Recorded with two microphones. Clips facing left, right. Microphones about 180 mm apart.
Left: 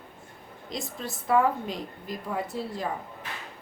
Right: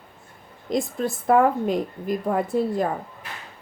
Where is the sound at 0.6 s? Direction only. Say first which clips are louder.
Right 11 dB; 50° right (ahead or behind).